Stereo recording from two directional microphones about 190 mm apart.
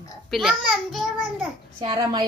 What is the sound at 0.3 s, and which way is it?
A woman's voice, centre (ahead or behind).